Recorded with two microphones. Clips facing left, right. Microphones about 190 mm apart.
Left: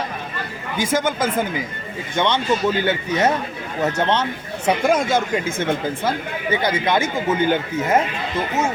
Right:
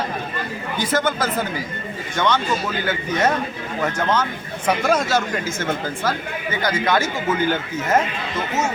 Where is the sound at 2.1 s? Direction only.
20° left (ahead or behind).